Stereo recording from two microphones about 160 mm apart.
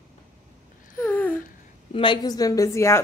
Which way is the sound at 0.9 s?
10° left (ahead or behind).